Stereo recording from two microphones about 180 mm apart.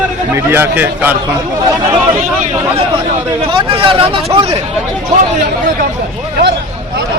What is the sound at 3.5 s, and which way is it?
Speech, 30° right (ahead or behind).